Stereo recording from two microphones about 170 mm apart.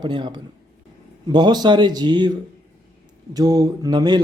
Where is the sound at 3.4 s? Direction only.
20° right (ahead or behind).